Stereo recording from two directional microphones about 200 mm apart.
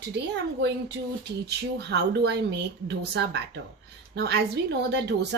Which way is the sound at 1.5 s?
60° right (ahead or behind).